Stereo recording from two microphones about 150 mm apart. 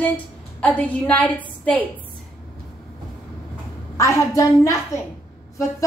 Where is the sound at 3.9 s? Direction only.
20° left (ahead or behind).